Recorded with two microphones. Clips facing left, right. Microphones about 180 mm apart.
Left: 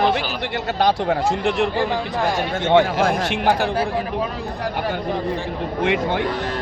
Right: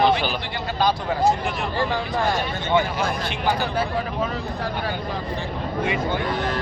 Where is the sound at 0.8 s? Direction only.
70° left (ahead or behind).